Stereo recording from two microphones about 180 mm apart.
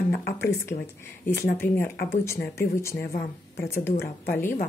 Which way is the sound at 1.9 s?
60° left (ahead or behind).